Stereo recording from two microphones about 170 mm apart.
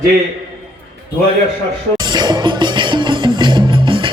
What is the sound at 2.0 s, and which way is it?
Music, 25° right (ahead or behind).